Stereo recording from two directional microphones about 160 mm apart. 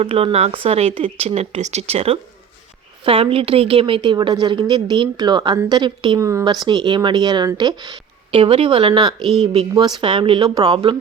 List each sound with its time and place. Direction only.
0.0 s a woman's voice: 40° right (ahead or behind)